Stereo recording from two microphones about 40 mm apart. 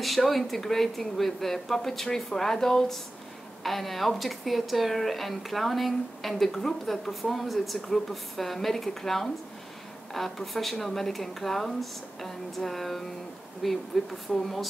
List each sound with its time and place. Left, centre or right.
0.0 s speech: centre